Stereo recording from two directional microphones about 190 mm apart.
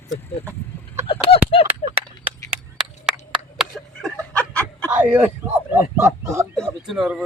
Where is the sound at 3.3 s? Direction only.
Centre (ahead or behind).